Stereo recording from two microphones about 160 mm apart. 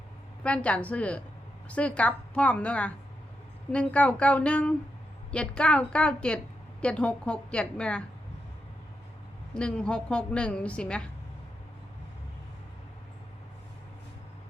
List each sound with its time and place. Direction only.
0.4 s a woman's voice: 5° left (ahead or behind)
9.6 s a woman's voice: 5° left (ahead or behind)